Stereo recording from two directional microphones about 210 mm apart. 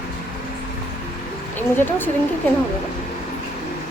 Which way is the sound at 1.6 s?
10° left (ahead or behind).